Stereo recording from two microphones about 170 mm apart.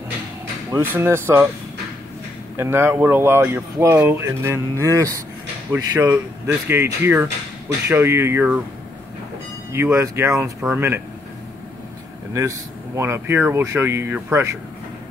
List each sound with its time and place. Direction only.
0.7 s speech: 15° right (ahead or behind)
2.5 s speech: 15° right (ahead or behind)
9.7 s speech: 15° right (ahead or behind)
12.4 s speech: 15° right (ahead or behind)